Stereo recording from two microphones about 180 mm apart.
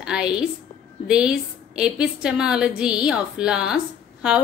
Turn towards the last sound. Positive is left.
turn(degrees=-5)  # may be behind; listen again after turning